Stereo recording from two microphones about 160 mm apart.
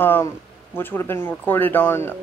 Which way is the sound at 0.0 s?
10° left (ahead or behind).